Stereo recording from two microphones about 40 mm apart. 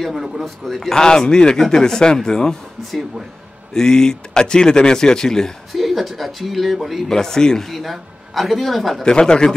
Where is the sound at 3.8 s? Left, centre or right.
Centre.